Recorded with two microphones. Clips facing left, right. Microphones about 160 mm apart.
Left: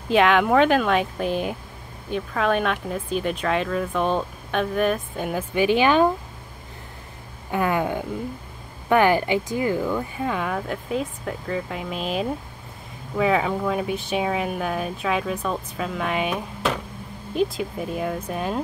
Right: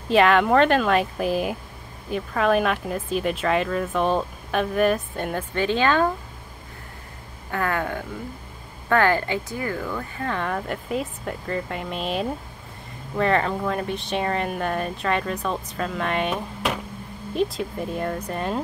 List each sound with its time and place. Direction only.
0.1 s speech: centre (ahead or behind); by 6.1 s 15° left (ahead or behind)
7.5 s speech: 15° left (ahead or behind)